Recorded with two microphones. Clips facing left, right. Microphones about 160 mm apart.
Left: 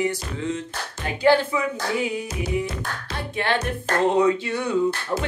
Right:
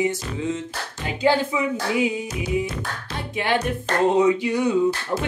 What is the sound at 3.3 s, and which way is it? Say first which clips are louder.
Speech: right 2 dB; 15° right (ahead or behind).